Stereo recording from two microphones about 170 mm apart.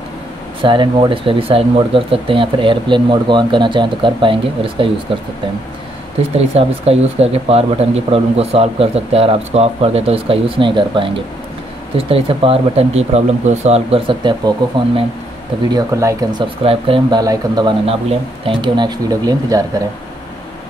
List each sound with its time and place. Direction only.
0.6 s speech: 30° right (ahead or behind)
6.3 s speech: 35° right (ahead or behind)
15.7 s speech: 15° right (ahead or behind)